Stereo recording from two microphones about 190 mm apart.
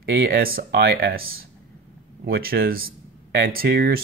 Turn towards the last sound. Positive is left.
turn(degrees=-55)  # may be behind; listen again after turning